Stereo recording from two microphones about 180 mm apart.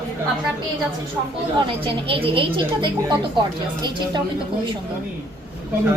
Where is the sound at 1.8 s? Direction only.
30° right (ahead or behind).